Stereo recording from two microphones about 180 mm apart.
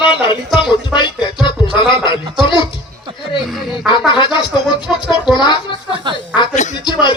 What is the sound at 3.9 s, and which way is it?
Speech, 25° left (ahead or behind).